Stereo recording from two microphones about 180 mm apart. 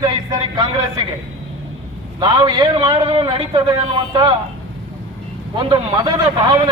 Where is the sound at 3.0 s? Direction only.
30° right (ahead or behind).